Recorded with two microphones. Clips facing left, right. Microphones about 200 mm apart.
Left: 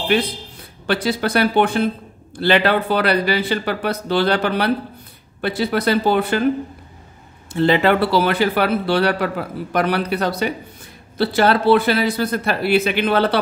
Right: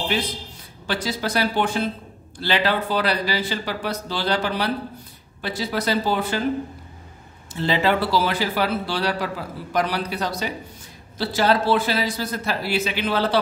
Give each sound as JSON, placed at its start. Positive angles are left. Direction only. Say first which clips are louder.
{"t": 0.8, "sound": "a man's voice", "louder": "left 6 dB", "side_deg": 60}
{"t": 7.5, "sound": "a man's voice", "louder": "left 6 dB", "side_deg": 60}